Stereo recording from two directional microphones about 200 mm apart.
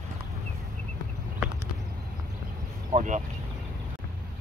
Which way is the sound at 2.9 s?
40° right (ahead or behind).